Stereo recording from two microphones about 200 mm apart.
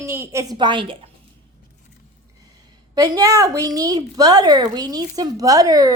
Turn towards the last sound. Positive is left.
turn(degrees=-20)  # may be behind; listen again after turning